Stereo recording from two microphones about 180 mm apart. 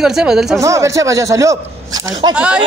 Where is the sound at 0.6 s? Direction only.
15° right (ahead or behind).